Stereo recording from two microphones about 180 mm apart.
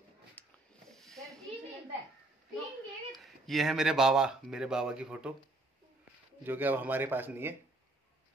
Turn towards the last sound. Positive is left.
turn(degrees=-10)  # may be behind; listen again after turning